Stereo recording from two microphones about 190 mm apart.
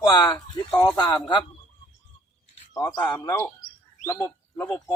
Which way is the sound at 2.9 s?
20° left (ahead or behind).